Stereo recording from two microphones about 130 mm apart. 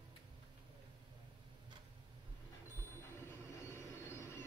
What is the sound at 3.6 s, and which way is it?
Vehicle, 20° left (ahead or behind).